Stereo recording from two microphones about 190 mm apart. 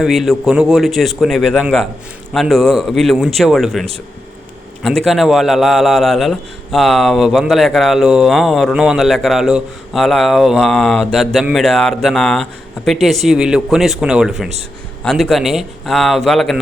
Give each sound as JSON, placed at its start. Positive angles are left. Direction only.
{"t": 0.0, "sound": "a man's voice", "side_deg": 0}